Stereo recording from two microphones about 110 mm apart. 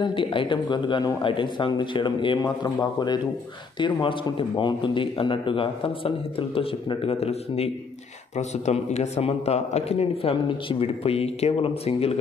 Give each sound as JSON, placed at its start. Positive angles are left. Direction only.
{"t": 0.0, "sound": "a man's voice", "side_deg": 50}
{"t": 3.8, "sound": "a man's voice", "side_deg": 50}
{"t": 8.4, "sound": "a man's voice", "side_deg": 90}